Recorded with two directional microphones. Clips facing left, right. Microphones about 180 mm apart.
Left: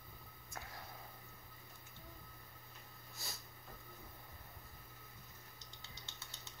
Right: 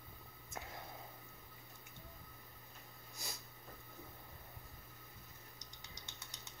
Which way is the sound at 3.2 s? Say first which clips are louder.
Right 1 dB; 15° right (ahead or behind).